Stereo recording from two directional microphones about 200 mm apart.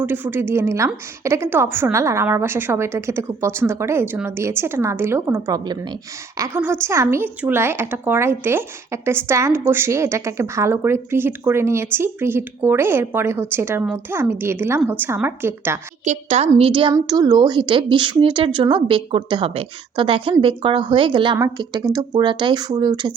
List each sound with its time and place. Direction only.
0.0 s a woman's voice: 10° right (ahead or behind)
16.0 s a woman's voice: 35° right (ahead or behind)